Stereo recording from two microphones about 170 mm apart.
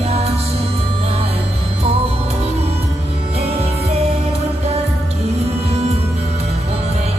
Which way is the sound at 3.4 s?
35° right (ahead or behind).